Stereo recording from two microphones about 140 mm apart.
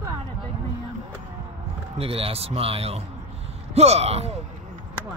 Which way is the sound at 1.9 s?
45° right (ahead or behind).